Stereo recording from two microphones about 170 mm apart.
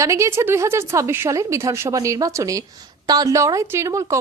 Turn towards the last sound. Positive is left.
turn(degrees=-20)  # may be behind; listen again after turning